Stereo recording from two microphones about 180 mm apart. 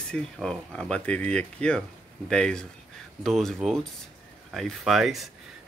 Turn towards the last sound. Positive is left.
turn(degrees=0)  # may be behind; listen again after turning